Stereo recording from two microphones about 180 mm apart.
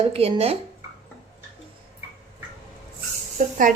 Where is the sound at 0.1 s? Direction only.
35° right (ahead or behind).